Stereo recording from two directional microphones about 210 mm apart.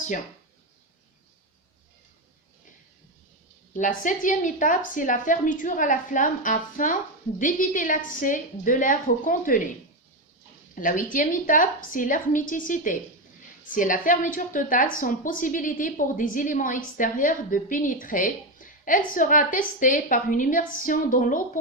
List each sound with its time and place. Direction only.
3.8 s a woman's voice: 40° left (ahead or behind)
10.8 s a woman's voice: 40° left (ahead or behind)